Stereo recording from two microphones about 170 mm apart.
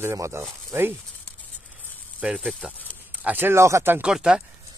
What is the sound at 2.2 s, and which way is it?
Speech, 5° right (ahead or behind).